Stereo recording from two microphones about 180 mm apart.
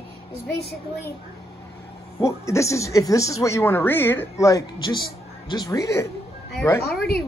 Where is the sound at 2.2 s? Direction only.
15° left (ahead or behind).